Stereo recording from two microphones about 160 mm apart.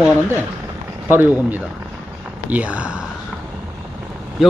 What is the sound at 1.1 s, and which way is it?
Speech, 10° right (ahead or behind).